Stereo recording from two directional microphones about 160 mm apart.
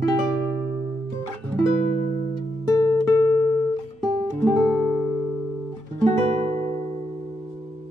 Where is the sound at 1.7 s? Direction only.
75° right (ahead or behind).